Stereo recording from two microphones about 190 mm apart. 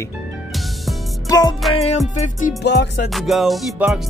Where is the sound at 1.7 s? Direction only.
35° left (ahead or behind).